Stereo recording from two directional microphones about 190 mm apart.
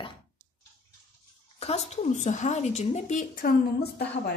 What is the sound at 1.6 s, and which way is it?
A woman's voice, 35° left (ahead or behind).